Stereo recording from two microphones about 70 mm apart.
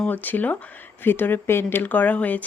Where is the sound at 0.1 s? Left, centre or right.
Left.